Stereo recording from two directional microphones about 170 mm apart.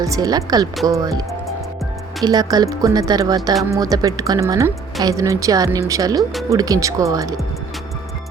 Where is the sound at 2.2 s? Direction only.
25° right (ahead or behind).